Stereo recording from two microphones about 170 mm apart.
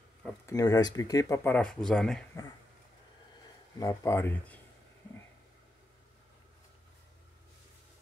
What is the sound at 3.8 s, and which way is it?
Speech, 15° left (ahead or behind).